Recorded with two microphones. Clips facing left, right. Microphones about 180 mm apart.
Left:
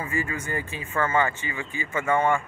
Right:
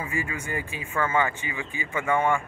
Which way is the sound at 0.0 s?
15° right (ahead or behind).